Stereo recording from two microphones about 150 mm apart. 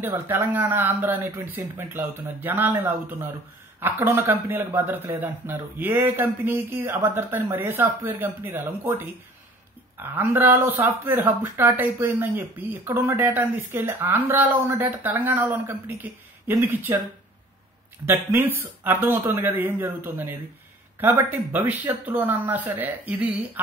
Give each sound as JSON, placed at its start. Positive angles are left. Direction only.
{"t": 0.0, "sound": "speech", "side_deg": -20}
{"t": 18.0, "sound": "speech", "side_deg": -15}